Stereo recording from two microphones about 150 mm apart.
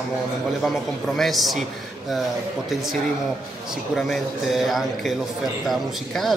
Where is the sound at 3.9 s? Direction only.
Centre (ahead or behind).